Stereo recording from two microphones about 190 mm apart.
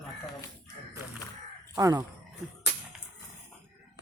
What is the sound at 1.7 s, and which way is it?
Speech, 20° right (ahead or behind).